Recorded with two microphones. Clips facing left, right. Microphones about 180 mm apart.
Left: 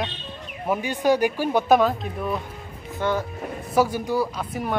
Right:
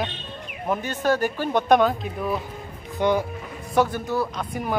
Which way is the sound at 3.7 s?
10° left (ahead or behind).